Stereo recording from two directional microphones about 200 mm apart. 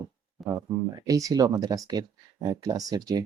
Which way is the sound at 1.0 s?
15° right (ahead or behind).